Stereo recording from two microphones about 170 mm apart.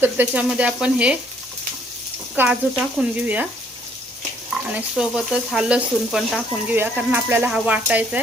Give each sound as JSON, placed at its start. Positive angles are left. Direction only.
{"t": 0.0, "sound": "speech", "side_deg": -10}
{"t": 2.3, "sound": "speech", "side_deg": -10}
{"t": 4.7, "sound": "speech", "side_deg": -5}